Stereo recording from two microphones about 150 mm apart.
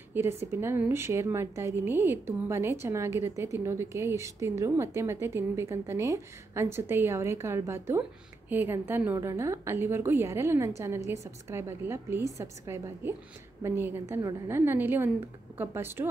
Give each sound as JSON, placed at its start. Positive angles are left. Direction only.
{"t": 0.1, "sound": "a woman's voice", "side_deg": -15}